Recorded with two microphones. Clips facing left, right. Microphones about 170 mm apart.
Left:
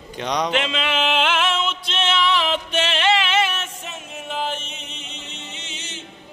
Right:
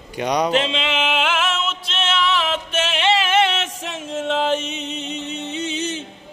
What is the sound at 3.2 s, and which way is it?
Music, 55° right (ahead or behind).